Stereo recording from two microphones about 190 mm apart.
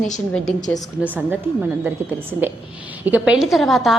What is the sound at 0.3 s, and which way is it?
Speech, centre (ahead or behind).